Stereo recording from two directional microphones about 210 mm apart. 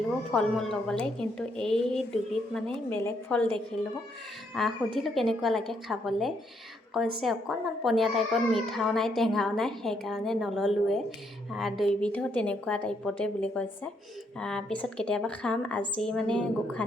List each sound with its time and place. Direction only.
0.3 s a woman's voice: centre (ahead or behind)